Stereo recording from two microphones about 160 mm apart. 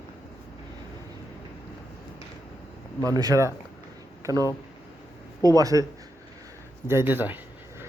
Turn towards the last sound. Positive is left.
turn(degrees=-10)  # may be behind; listen again after turning